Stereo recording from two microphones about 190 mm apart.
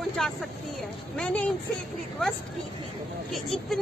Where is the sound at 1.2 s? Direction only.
5° left (ahead or behind).